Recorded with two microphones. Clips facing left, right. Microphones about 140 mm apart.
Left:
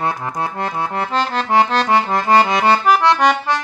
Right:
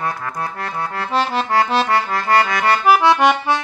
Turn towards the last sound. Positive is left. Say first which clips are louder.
# right 1 dB
turn(degrees=-5)  # may be behind; listen again after turning